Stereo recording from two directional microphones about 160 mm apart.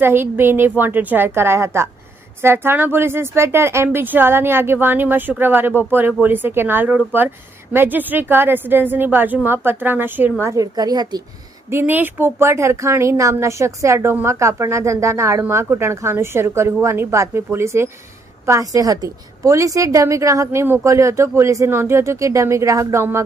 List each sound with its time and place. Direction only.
0.0 s speech: 15° right (ahead or behind)
11.7 s a woman's voice: 15° right (ahead or behind)